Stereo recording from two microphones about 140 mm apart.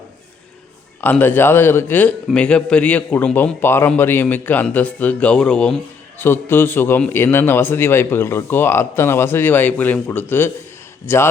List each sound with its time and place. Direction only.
1.0 s a man's voice: 15° left (ahead or behind)
6.2 s a man's voice: 15° left (ahead or behind)